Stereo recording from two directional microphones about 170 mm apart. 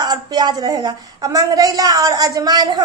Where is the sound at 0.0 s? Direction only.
25° right (ahead or behind).